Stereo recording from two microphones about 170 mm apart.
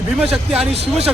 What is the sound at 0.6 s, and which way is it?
Speech, 40° right (ahead or behind).